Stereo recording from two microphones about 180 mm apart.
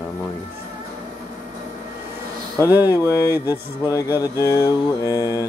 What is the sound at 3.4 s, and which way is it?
Mantra, 20° left (ahead or behind).